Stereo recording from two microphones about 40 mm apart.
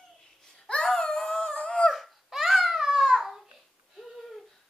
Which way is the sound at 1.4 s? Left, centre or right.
Left.